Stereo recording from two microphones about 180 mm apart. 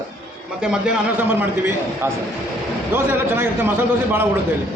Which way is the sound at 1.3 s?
10° right (ahead or behind).